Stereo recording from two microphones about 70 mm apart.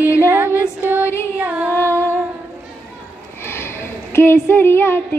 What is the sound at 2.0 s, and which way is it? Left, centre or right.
Humming, right.